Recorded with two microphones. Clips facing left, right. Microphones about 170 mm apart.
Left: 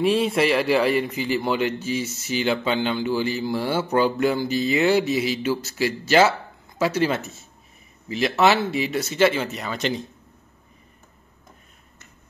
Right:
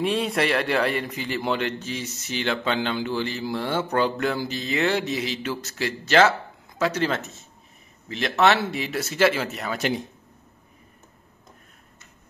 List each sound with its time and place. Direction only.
0.0 s speech: centre (ahead or behind)